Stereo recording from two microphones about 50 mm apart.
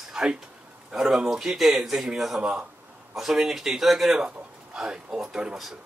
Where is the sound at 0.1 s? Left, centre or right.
Centre.